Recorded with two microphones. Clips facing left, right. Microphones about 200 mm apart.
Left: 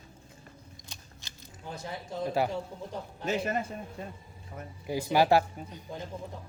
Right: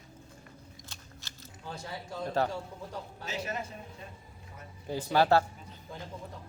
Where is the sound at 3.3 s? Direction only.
55° left (ahead or behind).